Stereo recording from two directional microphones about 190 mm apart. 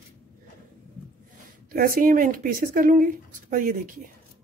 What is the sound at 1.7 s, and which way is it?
Speech, 45° right (ahead or behind).